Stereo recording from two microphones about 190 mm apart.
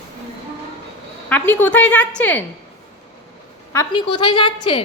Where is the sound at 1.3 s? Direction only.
10° left (ahead or behind).